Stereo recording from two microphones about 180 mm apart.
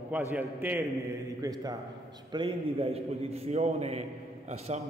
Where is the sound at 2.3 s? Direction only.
30° right (ahead or behind).